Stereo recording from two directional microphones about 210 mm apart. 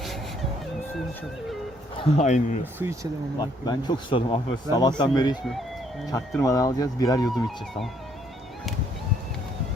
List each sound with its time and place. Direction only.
2.0 s speech: 30° left (ahead or behind)
2.7 s speech: 10° right (ahead or behind)
3.3 s speech: 20° left (ahead or behind)
6.4 s speech: 15° left (ahead or behind)
7.3 s speech: centre (ahead or behind)